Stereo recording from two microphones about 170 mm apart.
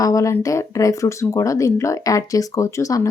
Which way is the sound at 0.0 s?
20° left (ahead or behind).